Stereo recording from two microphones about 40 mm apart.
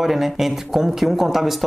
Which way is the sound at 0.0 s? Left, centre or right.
Centre.